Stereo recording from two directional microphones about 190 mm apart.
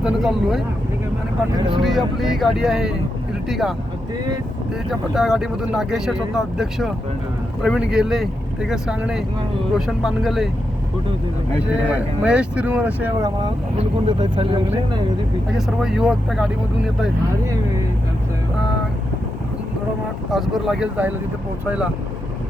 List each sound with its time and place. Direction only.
0.0 s speech: centre (ahead or behind)
1.8 s speech: centre (ahead or behind)
4.9 s speech: centre (ahead or behind)
11.7 s speech: 5° right (ahead or behind); by 14.6 s 25° right (ahead or behind)
15.4 s speech: centre (ahead or behind)
20.3 s speech: centre (ahead or behind)